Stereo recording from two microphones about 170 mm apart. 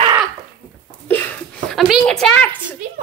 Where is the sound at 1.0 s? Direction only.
10° left (ahead or behind).